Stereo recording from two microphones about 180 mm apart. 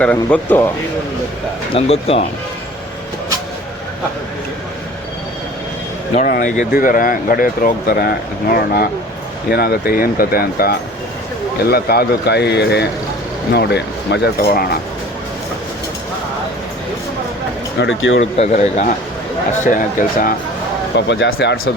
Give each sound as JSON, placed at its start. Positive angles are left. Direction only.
{"t": 0.0, "sound": "speech", "side_deg": 10}
{"t": 1.7, "sound": "speech", "side_deg": 35}
{"t": 6.1, "sound": "a man's voice", "side_deg": 50}
{"t": 17.7, "sound": "speech", "side_deg": 90}
{"t": 18.3, "sound": "speech", "side_deg": 40}
{"t": 20.9, "sound": "speech", "side_deg": 80}